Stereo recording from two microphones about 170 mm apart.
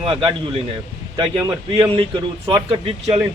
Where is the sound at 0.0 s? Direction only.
30° right (ahead or behind).